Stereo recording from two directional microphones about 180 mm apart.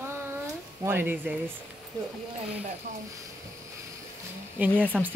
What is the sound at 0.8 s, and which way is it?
Speech, 10° right (ahead or behind).